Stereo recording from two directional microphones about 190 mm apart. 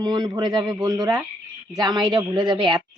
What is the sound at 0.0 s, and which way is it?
A woman's voice, 20° right (ahead or behind).